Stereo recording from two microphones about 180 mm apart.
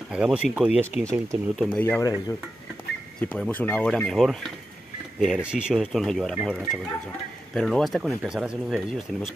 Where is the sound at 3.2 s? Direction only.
10° left (ahead or behind).